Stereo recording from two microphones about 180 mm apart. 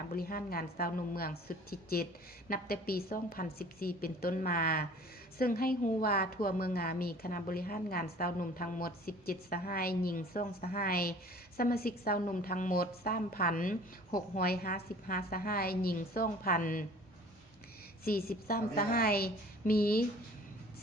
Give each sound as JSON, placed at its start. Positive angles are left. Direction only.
{"t": 0.1, "sound": "a woman's voice", "side_deg": 55}
{"t": 18.0, "sound": "a woman's voice", "side_deg": 55}